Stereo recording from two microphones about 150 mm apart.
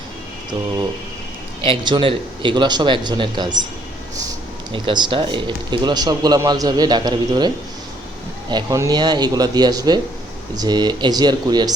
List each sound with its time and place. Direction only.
1.6 s speech: 30° right (ahead or behind)
4.7 s speech: 30° right (ahead or behind)